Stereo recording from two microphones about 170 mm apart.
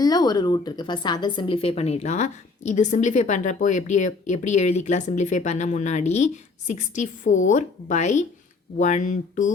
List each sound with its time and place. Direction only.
0.0 s speech: 25° left (ahead or behind); by 9.5 s 50° left (ahead or behind)